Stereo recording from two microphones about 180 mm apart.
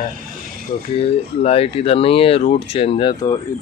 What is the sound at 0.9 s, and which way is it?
Speech, 35° left (ahead or behind).